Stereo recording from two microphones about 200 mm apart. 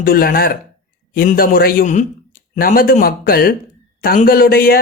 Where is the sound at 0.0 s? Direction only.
45° left (ahead or behind).